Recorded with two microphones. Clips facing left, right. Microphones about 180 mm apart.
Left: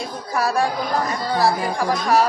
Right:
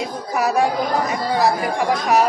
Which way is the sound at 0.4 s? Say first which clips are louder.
Right 2 dB; 20° right (ahead or behind).